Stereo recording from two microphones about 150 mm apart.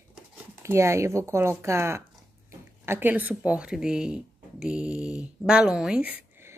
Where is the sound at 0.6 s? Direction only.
15° right (ahead or behind).